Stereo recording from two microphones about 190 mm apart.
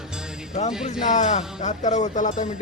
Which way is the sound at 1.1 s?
40° left (ahead or behind).